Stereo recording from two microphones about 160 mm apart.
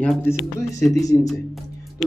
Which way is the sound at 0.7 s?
20° left (ahead or behind).